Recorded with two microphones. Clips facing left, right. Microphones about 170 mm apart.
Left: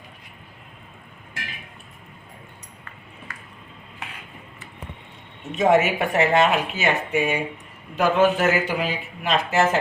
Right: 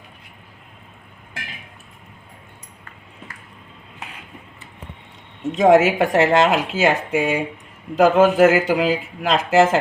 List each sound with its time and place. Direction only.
5.5 s speech: 90° right